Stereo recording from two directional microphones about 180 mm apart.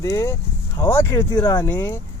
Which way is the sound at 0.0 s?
15° left (ahead or behind).